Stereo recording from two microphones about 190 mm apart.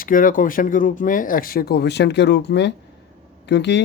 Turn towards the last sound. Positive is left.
turn(degrees=65)  # may be behind; listen again after turning